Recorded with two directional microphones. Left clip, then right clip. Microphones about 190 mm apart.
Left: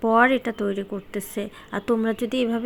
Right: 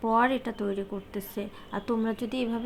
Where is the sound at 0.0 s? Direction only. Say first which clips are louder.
Left 6 dB; 20° left (ahead or behind).